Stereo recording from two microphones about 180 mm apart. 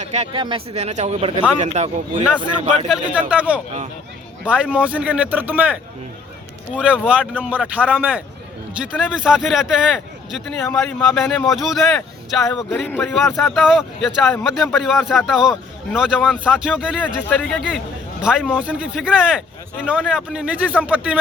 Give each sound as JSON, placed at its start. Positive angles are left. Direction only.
{"t": 0.0, "sound": "speech", "side_deg": -40}
{"t": 2.9, "sound": "speech", "side_deg": -5}
{"t": 6.7, "sound": "speech", "side_deg": -5}
{"t": 17.2, "sound": "speech", "side_deg": 10}